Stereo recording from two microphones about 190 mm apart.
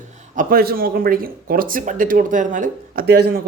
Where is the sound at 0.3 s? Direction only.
50° right (ahead or behind).